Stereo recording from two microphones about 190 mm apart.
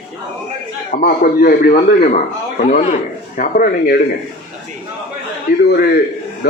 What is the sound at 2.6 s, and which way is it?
A man's voice, 40° left (ahead or behind).